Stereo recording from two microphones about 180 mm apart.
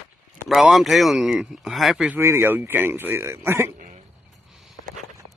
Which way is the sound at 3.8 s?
45° right (ahead or behind).